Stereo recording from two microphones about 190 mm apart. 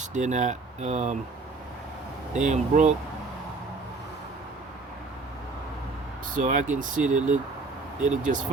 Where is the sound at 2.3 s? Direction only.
40° right (ahead or behind).